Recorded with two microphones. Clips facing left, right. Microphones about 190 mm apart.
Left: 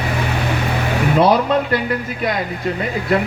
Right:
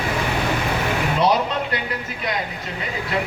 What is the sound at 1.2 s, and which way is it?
Speech, 55° left (ahead or behind).